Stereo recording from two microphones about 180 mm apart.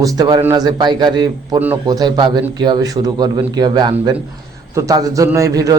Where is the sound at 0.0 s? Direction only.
20° right (ahead or behind).